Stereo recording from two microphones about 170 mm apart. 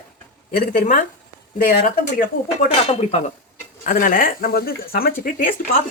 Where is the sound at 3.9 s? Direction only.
50° left (ahead or behind).